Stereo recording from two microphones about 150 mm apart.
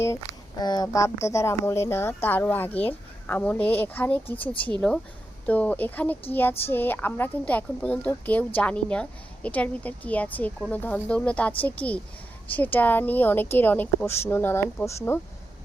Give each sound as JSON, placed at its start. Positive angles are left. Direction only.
{"t": 0.6, "sound": "speech", "side_deg": 25}